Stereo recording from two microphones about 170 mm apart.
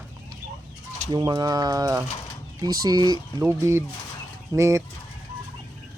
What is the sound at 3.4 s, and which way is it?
Chicken, 15° right (ahead or behind).